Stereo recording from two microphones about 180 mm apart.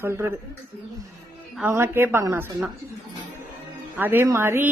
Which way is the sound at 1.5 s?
10° right (ahead or behind).